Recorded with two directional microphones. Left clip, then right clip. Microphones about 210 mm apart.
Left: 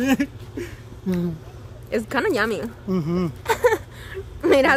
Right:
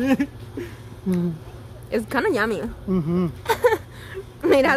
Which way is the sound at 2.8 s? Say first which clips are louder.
Right 1 dB; 45° left (ahead or behind).